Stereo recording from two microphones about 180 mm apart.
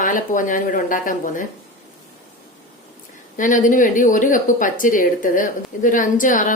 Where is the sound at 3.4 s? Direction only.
45° left (ahead or behind).